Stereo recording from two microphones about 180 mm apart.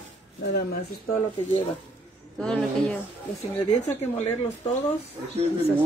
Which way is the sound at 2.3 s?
5° left (ahead or behind).